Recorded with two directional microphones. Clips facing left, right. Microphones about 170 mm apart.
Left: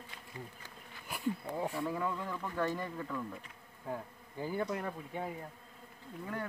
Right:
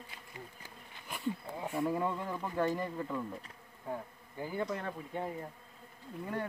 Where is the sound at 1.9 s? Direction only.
25° right (ahead or behind).